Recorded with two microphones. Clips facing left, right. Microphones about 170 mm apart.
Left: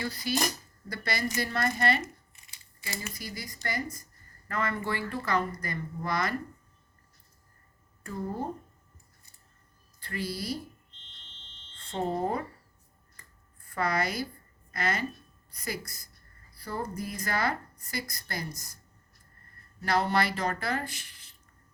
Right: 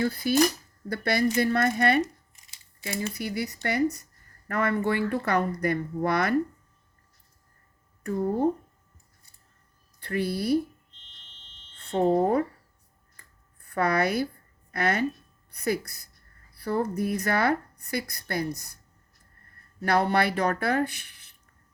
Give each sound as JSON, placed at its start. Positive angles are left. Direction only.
{"t": 0.0, "sound": "cutlery", "side_deg": -55}
{"t": 0.9, "sound": "speech", "side_deg": -60}
{"t": 3.2, "sound": "speech", "side_deg": -65}
{"t": 8.0, "sound": "speech", "side_deg": -60}
{"t": 10.0, "sound": "speech", "side_deg": -60}
{"t": 12.1, "sound": "cutlery", "side_deg": -55}
{"t": 13.6, "sound": "a woman's voice", "side_deg": -60}
{"t": 19.8, "sound": "speech", "side_deg": -60}